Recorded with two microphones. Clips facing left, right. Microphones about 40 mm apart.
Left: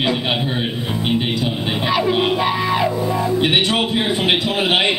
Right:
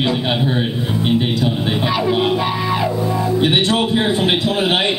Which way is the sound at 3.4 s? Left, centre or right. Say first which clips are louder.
Right 2 dB; centre.